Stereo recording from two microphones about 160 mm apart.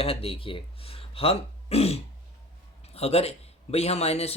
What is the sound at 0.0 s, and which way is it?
Speech, 35° left (ahead or behind).